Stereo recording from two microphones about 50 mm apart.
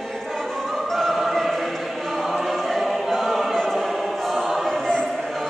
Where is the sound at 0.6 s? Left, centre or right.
Centre.